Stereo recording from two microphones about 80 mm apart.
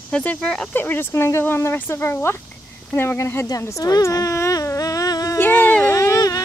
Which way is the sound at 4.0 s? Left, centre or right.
Left.